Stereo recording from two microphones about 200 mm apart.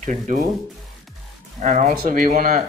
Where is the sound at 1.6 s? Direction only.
35° right (ahead or behind).